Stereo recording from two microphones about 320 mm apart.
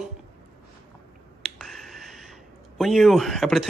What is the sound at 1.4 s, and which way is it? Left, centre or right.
Speech, centre.